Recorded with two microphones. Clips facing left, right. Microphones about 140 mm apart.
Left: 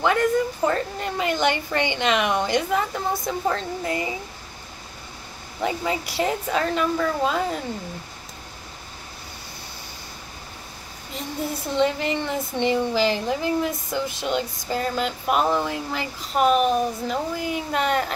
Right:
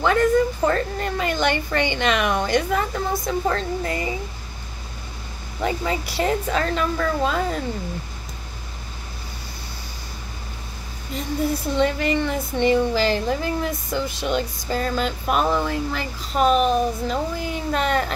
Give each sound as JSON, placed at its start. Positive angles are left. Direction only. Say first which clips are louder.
{"t": 0.0, "sound": "speech", "louder": "right 3 dB", "side_deg": 10}
{"t": 5.6, "sound": "speech", "louder": "right 1 dB", "side_deg": 15}
{"t": 11.7, "sound": "speech", "louder": "left 1 dB", "side_deg": 20}